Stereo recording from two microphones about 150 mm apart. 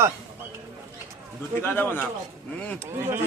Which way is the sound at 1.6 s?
15° left (ahead or behind).